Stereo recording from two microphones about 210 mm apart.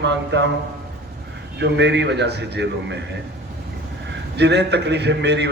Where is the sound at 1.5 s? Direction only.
55° right (ahead or behind).